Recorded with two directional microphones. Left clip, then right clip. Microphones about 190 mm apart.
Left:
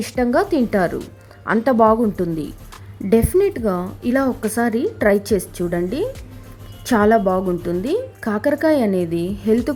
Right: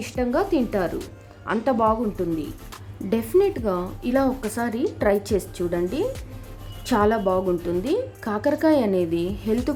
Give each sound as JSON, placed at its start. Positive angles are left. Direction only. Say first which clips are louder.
{"t": 0.0, "sound": "a woman's voice", "louder": "left 5 dB", "side_deg": 20}